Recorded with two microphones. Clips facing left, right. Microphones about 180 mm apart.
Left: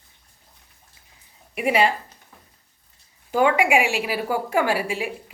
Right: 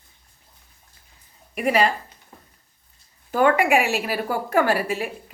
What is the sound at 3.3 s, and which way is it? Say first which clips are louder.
A woman's voice: right 1 dB; 10° left (ahead or behind).